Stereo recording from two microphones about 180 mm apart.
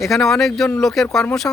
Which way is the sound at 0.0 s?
Centre (ahead or behind).